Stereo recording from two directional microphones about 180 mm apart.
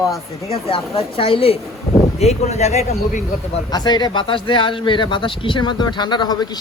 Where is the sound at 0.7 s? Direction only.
30° left (ahead or behind).